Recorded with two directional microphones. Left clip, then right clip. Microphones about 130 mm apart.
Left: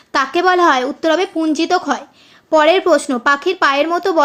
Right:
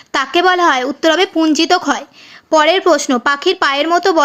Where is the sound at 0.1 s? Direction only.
15° right (ahead or behind).